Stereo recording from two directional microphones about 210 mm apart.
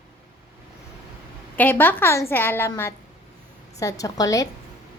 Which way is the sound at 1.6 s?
10° left (ahead or behind).